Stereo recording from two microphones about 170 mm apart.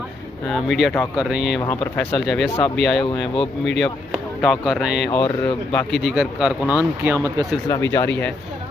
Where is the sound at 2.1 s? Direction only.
Centre (ahead or behind).